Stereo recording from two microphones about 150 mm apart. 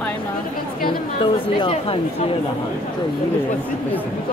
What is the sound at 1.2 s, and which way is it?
Speech, 35° left (ahead or behind).